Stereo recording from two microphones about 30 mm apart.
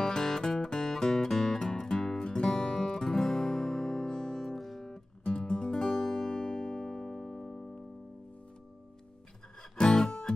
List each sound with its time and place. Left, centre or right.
0.0 s music: centre
4.4 s music: centre
4.8 s music: left
6.5 s music: left
9.8 s music: left